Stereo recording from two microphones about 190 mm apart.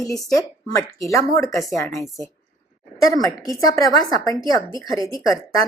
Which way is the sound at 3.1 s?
20° left (ahead or behind).